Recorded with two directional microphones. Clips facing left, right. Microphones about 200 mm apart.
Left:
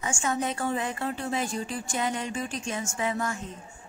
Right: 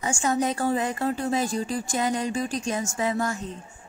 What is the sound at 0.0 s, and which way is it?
Speech, 35° right (ahead or behind).